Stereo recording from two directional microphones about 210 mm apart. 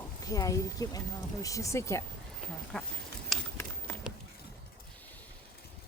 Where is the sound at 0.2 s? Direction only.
15° left (ahead or behind).